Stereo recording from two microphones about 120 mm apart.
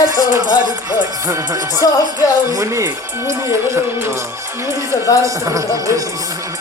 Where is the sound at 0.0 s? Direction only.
35° right (ahead or behind).